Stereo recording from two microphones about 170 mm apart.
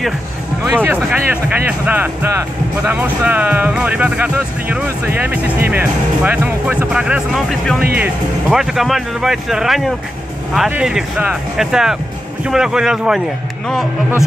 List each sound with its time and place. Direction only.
0.7 s speech: 15° right (ahead or behind)